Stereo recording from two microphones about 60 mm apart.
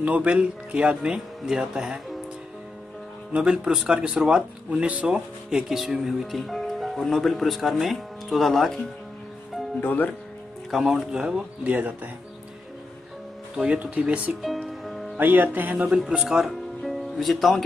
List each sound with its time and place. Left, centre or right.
0.0 s speech: right
3.3 s speech: centre
9.8 s speech: left
10.7 s speech: centre
11.6 s speech: right
13.7 s speech: centre
14.4 s music: centre
15.1 s speech: right
16.1 s speech: centre